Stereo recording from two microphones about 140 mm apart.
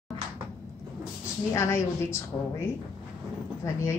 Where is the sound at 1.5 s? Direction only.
20° left (ahead or behind).